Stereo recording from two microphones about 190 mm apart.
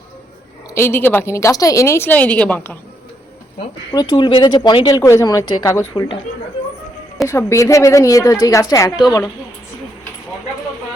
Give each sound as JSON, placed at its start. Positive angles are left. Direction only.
{"t": 0.7, "sound": "a woman's voice", "side_deg": 15}
{"t": 3.6, "sound": "speech", "side_deg": 25}
{"t": 7.3, "sound": "a woman's voice", "side_deg": 15}